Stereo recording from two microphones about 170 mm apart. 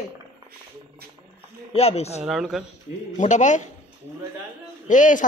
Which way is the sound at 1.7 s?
35° left (ahead or behind).